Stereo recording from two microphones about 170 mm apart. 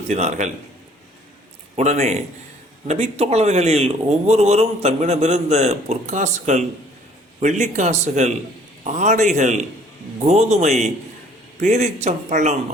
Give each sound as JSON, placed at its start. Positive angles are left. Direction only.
{"t": 0.1, "sound": "speech", "side_deg": -40}
{"t": 1.7, "sound": "speech", "side_deg": -40}